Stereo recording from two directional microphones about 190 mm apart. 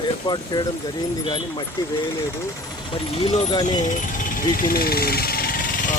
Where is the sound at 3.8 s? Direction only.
45° left (ahead or behind).